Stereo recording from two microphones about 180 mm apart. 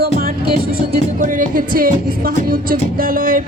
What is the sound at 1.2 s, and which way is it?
Speech, 50° right (ahead or behind).